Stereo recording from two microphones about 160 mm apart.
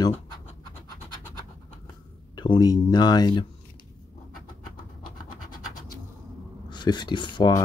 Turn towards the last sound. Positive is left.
turn(degrees=30)  # may be behind; listen again after turning